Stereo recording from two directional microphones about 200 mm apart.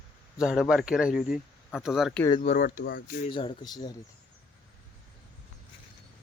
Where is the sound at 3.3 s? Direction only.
25° left (ahead or behind).